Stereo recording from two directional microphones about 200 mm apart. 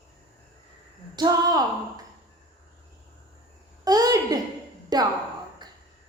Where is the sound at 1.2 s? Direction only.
20° right (ahead or behind).